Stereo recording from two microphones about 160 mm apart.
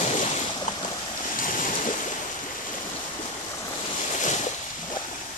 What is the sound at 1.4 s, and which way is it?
Waves, 55° left (ahead or behind).